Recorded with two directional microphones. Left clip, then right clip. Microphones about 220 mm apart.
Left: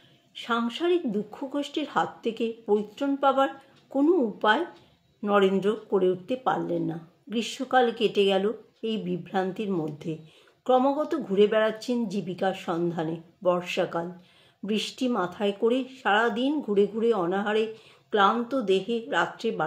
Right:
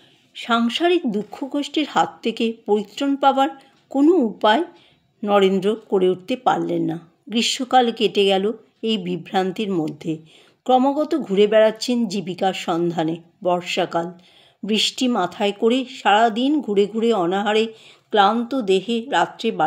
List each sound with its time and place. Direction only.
0.3 s speech: 45° right (ahead or behind)